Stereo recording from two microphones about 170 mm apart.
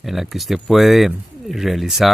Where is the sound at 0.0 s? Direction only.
Centre (ahead or behind).